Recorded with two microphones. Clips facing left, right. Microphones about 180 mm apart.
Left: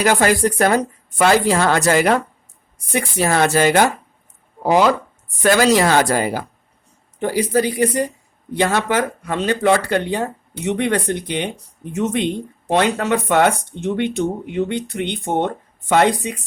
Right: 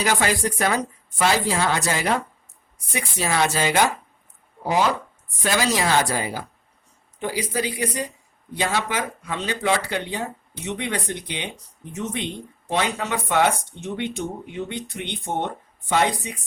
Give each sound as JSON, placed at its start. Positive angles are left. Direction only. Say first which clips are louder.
{"t": 0.0, "sound": "speech", "louder": "left 7 dB", "side_deg": 55}
{"t": 4.6, "sound": "speech", "louder": "left 7 dB", "side_deg": 70}
{"t": 11.9, "sound": "speech", "louder": "left 9 dB", "side_deg": 70}